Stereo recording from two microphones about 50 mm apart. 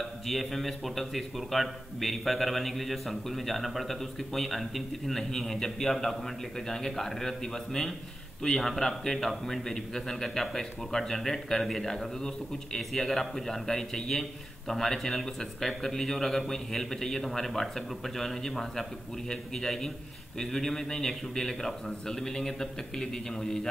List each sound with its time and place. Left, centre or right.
0.0 s a man's voice: centre